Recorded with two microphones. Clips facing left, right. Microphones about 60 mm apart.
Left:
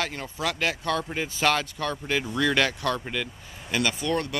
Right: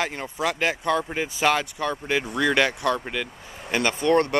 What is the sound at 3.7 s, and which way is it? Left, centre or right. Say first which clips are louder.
Speech: right 6 dB; right.